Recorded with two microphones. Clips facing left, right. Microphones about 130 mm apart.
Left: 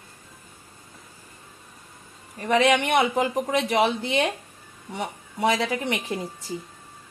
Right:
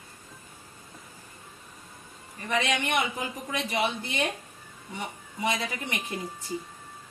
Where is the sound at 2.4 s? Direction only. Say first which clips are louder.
Left 8 dB; 90° left.